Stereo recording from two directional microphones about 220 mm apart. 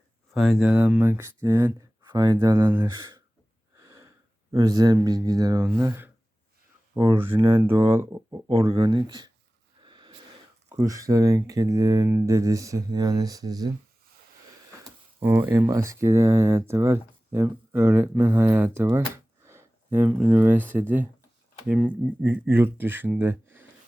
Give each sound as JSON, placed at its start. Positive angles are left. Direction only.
{"t": 0.3, "sound": "speech", "side_deg": 0}
{"t": 3.8, "sound": "a sound", "side_deg": -15}
{"t": 4.5, "sound": "speech", "side_deg": -20}
{"t": 8.4, "sound": "speech", "side_deg": -25}
{"t": 9.8, "sound": "a sound", "side_deg": -20}
{"t": 10.7, "sound": "speech", "side_deg": -15}
{"t": 15.2, "sound": "speech", "side_deg": -10}